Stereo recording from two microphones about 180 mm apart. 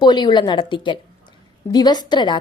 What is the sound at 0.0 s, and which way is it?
A woman's voice, 25° left (ahead or behind).